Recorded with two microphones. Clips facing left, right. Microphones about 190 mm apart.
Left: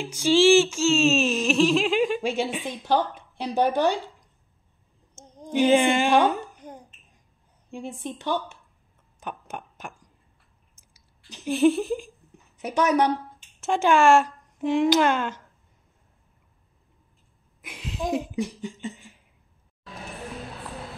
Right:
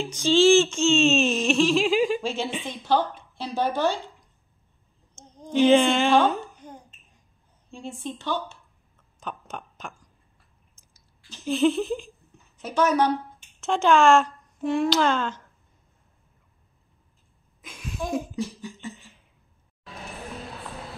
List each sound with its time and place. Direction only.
0.0 s a sound: 10° left (ahead or behind)
2.2 s speech: 10° left (ahead or behind)
5.1 s babbling: 10° left (ahead or behind)
7.7 s speech: 15° left (ahead or behind)
9.2 s a sound: 10° left (ahead or behind)
11.2 s a woman's voice: 15° left (ahead or behind)
17.6 s laughter: 20° left (ahead or behind)